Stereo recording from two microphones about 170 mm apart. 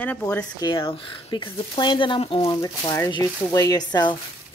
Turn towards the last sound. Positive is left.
turn(degrees=25)  # may be behind; listen again after turning